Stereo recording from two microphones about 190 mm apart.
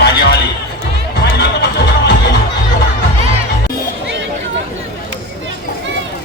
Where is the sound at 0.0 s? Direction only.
60° left (ahead or behind).